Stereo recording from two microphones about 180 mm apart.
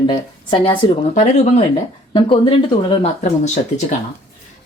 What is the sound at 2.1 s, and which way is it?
Speech, 30° left (ahead or behind).